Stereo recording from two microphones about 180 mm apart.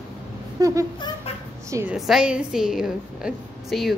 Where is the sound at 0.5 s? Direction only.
20° right (ahead or behind).